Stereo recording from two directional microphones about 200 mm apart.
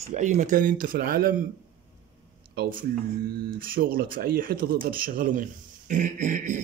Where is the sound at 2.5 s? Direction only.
50° right (ahead or behind).